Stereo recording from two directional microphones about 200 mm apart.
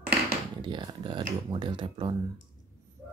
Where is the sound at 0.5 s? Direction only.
20° right (ahead or behind).